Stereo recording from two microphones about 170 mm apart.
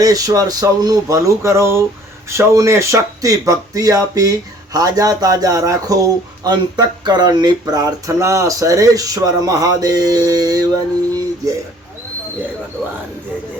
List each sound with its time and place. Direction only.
0.0 s speech: 20° right (ahead or behind)